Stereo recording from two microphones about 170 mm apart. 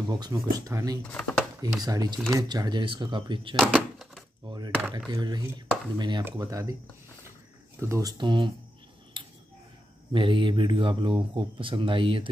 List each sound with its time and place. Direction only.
0.1 s speech: 25° right (ahead or behind)
1.0 s speech: 10° left (ahead or behind)
1.6 s speech: 20° right (ahead or behind)
3.5 s door: centre (ahead or behind)
4.5 s speech: 25° right (ahead or behind)
7.8 s speech: 20° right (ahead or behind)
10.1 s speech: 30° right (ahead or behind)